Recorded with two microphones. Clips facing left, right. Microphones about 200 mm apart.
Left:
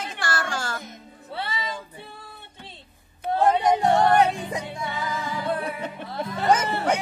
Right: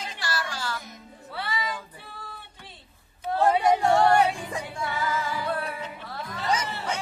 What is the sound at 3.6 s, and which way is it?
Music, 20° left (ahead or behind).